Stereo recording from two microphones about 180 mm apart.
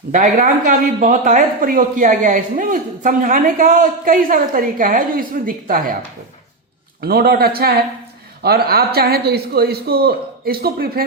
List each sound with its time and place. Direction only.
0.1 s speech: 50° right (ahead or behind)
7.0 s a man's voice: 60° right (ahead or behind)